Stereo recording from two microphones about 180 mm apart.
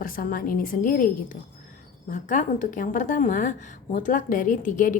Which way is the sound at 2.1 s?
45° left (ahead or behind).